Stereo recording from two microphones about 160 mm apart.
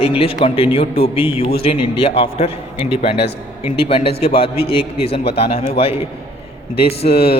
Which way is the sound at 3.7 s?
35° left (ahead or behind).